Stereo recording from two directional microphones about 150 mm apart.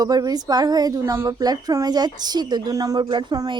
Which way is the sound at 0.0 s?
25° right (ahead or behind).